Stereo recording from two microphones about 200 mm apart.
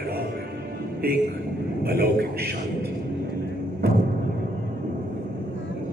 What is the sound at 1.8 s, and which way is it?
Speech, 50° right (ahead or behind).